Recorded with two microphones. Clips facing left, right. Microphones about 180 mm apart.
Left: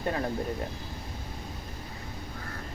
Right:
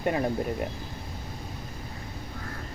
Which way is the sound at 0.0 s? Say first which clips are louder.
Right 4 dB; 15° right (ahead or behind).